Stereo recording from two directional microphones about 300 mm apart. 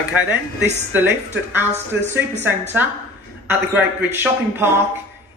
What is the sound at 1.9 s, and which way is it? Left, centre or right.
Speech, right.